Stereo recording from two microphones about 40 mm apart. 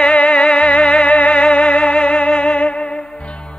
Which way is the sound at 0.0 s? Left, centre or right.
Left.